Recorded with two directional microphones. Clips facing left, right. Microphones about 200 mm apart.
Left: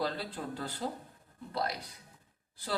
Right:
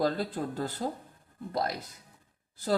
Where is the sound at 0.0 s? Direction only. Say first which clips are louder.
Right 6 dB; 45° right (ahead or behind).